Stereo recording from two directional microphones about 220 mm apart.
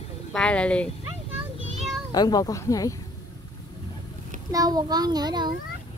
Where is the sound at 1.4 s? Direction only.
Centre (ahead or behind).